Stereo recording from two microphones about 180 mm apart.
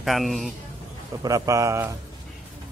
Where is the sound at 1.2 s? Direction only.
20° right (ahead or behind).